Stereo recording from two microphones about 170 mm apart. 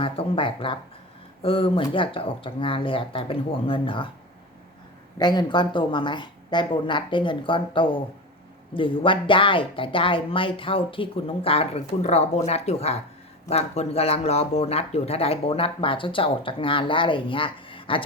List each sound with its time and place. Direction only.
0.0 s speech: 30° left (ahead or behind)
5.1 s speech: 25° left (ahead or behind)